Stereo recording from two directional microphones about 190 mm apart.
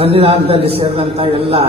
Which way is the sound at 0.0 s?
30° right (ahead or behind).